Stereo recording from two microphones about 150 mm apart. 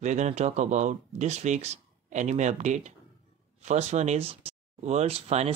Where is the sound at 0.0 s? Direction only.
50° right (ahead or behind).